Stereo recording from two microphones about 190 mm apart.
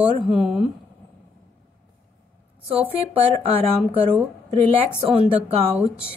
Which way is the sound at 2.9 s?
30° right (ahead or behind).